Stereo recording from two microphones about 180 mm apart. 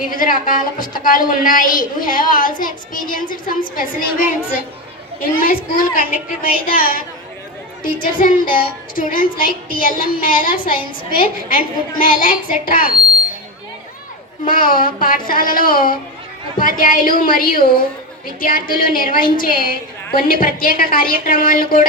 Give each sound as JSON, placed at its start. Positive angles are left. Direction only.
{"t": 0.0, "sound": "a woman's voice", "side_deg": 50}
{"t": 5.4, "sound": "a woman's voice", "side_deg": 55}
{"t": 14.4, "sound": "a woman's voice", "side_deg": 50}